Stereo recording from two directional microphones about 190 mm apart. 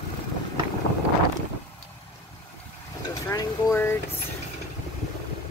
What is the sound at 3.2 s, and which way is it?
Vehicle, 15° left (ahead or behind).